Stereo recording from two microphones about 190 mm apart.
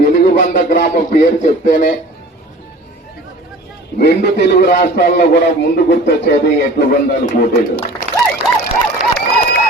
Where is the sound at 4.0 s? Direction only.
60° left (ahead or behind).